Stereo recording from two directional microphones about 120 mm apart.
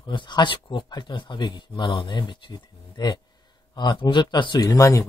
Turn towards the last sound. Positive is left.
turn(degrees=25)  # may be behind; listen again after turning